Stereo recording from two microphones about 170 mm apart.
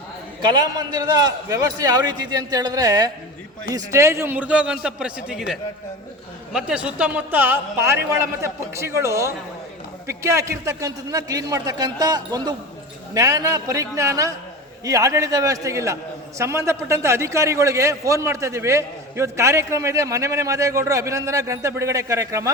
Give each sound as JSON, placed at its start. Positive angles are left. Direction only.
{"t": 0.5, "sound": "a man's voice", "side_deg": -25}